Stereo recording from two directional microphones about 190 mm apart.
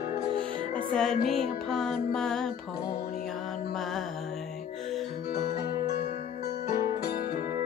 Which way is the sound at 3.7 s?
Centre (ahead or behind).